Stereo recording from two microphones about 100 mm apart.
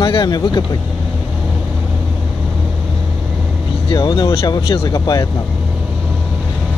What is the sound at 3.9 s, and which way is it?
Speech, 45° left (ahead or behind).